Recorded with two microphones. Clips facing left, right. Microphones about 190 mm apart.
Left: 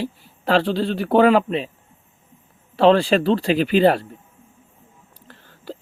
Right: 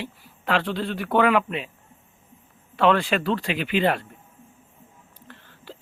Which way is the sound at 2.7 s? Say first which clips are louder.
Left 6 dB; 30° left (ahead or behind).